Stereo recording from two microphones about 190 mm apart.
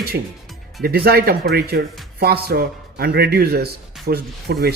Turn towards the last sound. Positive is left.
turn(degrees=-55)  # may be behind; listen again after turning